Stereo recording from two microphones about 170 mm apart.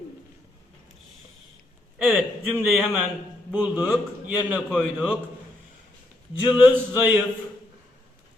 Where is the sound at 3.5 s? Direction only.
10° right (ahead or behind).